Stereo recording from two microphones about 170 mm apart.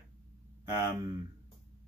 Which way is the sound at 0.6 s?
15° right (ahead or behind).